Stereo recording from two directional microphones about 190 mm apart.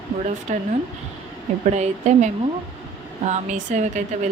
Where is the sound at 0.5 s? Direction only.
40° right (ahead or behind).